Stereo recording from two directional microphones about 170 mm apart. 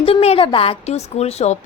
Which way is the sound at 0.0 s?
35° left (ahead or behind).